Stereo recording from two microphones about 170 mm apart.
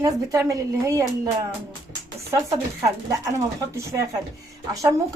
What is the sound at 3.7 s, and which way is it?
Speech, 15° right (ahead or behind).